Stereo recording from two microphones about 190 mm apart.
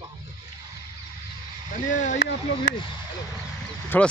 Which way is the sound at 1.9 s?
40° left (ahead or behind).